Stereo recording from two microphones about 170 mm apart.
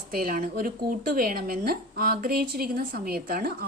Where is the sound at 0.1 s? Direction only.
55° right (ahead or behind).